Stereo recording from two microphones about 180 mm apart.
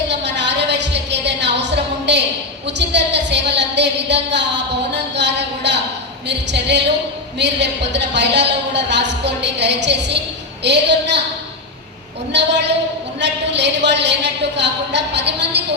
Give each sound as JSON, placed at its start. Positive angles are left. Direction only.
{"t": 0.1, "sound": "music", "side_deg": -75}
{"t": 2.6, "sound": "a sound", "side_deg": -75}
{"t": 6.2, "sound": "a woman's voice", "side_deg": -75}
{"t": 12.3, "sound": "a woman's voice", "side_deg": -75}